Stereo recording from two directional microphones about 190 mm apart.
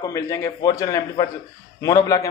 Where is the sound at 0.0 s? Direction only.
15° left (ahead or behind).